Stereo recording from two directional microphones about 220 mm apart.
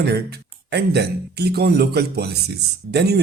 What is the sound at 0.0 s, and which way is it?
Speech, 50° right (ahead or behind).